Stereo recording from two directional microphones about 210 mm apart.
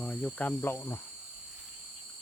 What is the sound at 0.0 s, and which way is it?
Speech, 5° left (ahead or behind).